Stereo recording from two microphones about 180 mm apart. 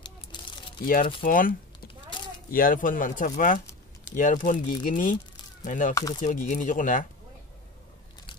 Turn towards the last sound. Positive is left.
turn(degrees=45)  # may be behind; listen again after turning